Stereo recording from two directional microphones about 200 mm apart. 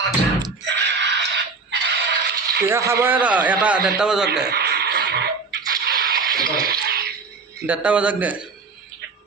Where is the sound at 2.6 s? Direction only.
15° right (ahead or behind).